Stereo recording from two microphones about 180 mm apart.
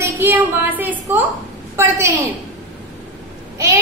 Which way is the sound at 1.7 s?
15° right (ahead or behind).